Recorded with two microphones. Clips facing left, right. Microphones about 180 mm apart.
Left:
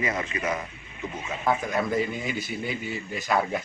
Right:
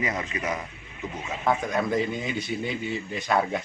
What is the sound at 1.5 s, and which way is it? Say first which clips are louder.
Speech: right 1 dB; 5° left (ahead or behind).